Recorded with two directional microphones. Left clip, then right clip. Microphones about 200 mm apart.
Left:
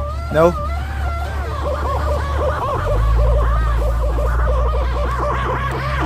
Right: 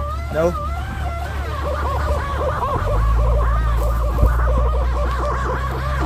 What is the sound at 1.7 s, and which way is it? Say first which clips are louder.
Snicker: left 2 dB; 20° left (ahead or behind).